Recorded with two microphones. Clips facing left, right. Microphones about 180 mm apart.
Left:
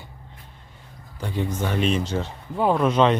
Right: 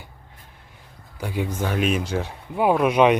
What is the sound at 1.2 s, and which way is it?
Speech, 10° right (ahead or behind).